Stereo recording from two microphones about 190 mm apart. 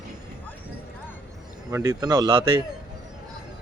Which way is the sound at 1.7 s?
15° right (ahead or behind).